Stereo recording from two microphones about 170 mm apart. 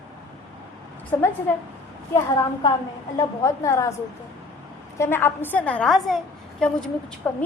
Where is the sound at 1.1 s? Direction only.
15° left (ahead or behind).